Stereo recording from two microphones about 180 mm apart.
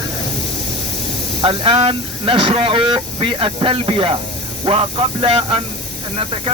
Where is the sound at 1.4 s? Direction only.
30° right (ahead or behind).